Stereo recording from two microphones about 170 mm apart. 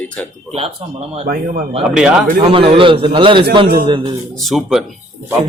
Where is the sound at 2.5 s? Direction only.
30° right (ahead or behind).